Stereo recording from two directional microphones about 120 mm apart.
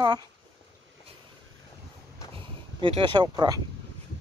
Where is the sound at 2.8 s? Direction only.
40° right (ahead or behind).